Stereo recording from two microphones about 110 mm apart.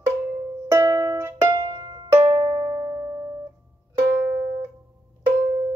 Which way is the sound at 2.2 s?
45° right (ahead or behind).